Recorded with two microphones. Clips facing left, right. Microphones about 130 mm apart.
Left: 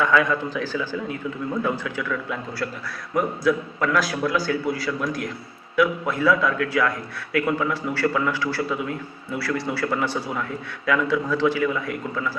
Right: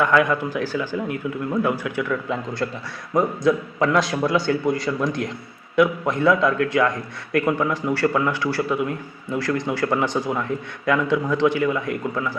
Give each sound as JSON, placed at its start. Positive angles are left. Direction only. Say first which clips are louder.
{"t": 0.0, "sound": "a man's voice", "louder": "right 2 dB", "side_deg": -15}